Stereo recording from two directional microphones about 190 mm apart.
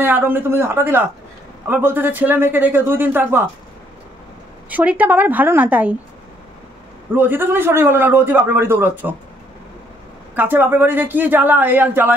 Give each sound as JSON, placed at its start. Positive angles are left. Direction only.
{"t": 0.0, "sound": "a man's voice", "side_deg": -10}
{"t": 4.6, "sound": "a man's voice", "side_deg": -10}
{"t": 7.2, "sound": "a man's voice", "side_deg": -10}
{"t": 10.3, "sound": "a man's voice", "side_deg": -10}